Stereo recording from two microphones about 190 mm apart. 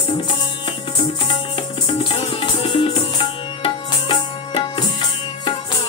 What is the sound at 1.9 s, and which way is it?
Music, 30° left (ahead or behind).